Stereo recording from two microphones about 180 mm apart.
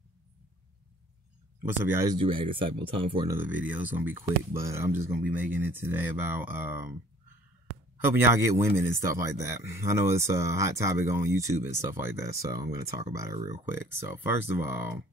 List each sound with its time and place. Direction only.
1.6 s a man's voice: 15° right (ahead or behind)
2.1 s speech: 30° right (ahead or behind)
3.3 s a man's voice: 10° right (ahead or behind)
8.0 s a man's voice: 15° right (ahead or behind)